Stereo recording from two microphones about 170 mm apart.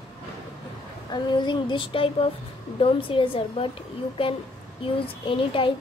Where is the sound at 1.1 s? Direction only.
25° left (ahead or behind).